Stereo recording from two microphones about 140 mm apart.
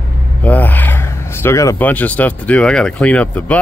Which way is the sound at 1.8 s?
10° left (ahead or behind).